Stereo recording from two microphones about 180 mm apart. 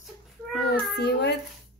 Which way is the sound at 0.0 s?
Centre (ahead or behind).